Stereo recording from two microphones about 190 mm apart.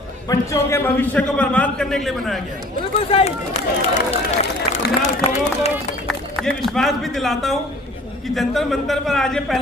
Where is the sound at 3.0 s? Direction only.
30° left (ahead or behind).